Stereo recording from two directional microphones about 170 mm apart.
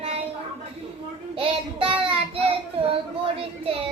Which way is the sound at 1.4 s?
30° right (ahead or behind).